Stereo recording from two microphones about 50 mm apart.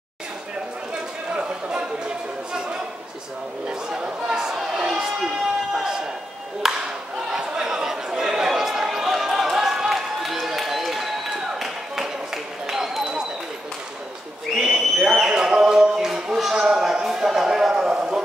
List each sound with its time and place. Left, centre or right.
1.3 s chatter: centre
3.6 s speech: centre
6.6 s speech: centre
7.2 s chatter: centre
12.6 s a sound: centre
14.6 s a sound: centre